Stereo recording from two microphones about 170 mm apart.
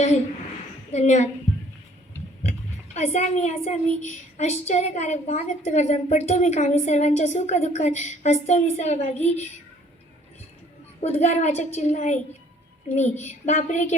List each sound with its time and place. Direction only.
0.9 s a woman's voice: 40° left (ahead or behind)
2.5 s speech: 45° left (ahead or behind)
11.0 s speech: 40° left (ahead or behind)